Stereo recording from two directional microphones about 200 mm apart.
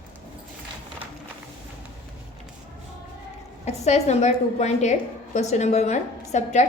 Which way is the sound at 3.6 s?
35° left (ahead or behind).